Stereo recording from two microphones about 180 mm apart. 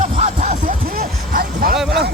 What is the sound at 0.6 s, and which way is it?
Music, 55° right (ahead or behind).